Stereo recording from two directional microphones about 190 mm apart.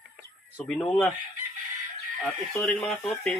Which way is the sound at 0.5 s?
5° left (ahead or behind).